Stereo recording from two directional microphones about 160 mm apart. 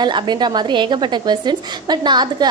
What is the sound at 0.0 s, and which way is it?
A woman's voice, 25° right (ahead or behind).